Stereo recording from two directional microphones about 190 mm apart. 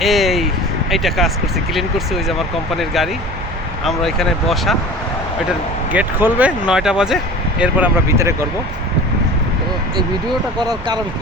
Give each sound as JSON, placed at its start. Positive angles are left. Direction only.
{"t": 0.0, "sound": "a sound", "side_deg": 0}
{"t": 0.9, "sound": "speech", "side_deg": 0}
{"t": 5.9, "sound": "speech", "side_deg": -10}
{"t": 10.6, "sound": "speech", "side_deg": -20}